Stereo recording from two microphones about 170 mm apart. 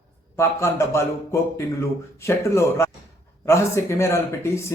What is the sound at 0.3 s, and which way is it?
A man's voice, 15° left (ahead or behind).